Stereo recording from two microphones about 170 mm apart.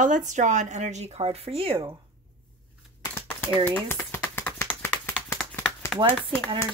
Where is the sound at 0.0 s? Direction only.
45° right (ahead or behind); by 2.0 s 25° right (ahead or behind).